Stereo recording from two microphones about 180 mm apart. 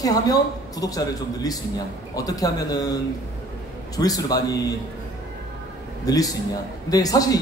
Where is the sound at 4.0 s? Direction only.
20° left (ahead or behind).